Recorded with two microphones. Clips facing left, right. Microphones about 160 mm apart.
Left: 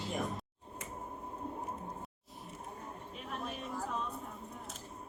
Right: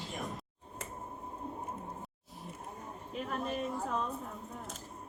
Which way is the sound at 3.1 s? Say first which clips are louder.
Right 7 dB; centre (ahead or behind).